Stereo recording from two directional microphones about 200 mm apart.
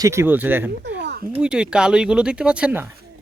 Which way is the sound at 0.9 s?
60° right (ahead or behind).